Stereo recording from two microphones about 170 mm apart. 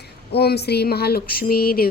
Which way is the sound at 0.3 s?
70° left (ahead or behind).